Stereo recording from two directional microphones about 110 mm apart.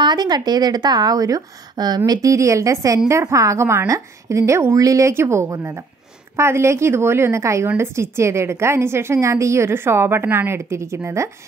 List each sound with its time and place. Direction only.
0.0 s a woman's voice: 40° right (ahead or behind); by 11.2 s 25° right (ahead or behind)